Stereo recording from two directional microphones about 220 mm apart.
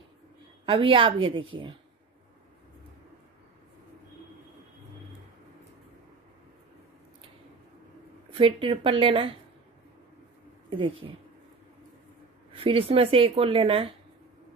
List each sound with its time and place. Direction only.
0.7 s a woman's voice: 25° right (ahead or behind)
8.3 s a woman's voice: 25° right (ahead or behind)
11.0 s a woman's voice: 20° right (ahead or behind)
12.5 s a woman's voice: 25° right (ahead or behind)